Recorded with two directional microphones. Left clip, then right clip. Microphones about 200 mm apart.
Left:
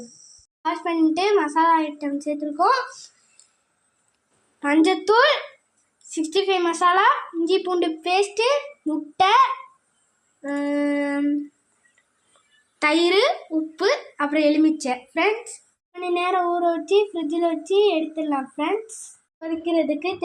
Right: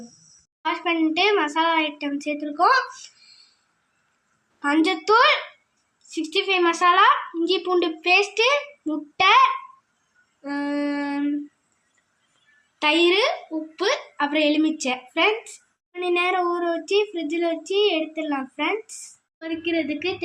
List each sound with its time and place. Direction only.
0.6 s a child's voice: centre (ahead or behind)
1.3 s a woman's voice: 15° right (ahead or behind)
1.5 s a child's voice: 5° right (ahead or behind)
4.6 s a child's voice: 5° left (ahead or behind)
10.5 s a child's voice: 5° right (ahead or behind)
12.8 s a child's voice: 10° left (ahead or behind)